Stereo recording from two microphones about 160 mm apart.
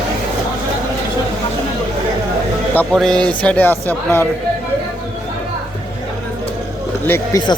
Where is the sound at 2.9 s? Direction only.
5° left (ahead or behind).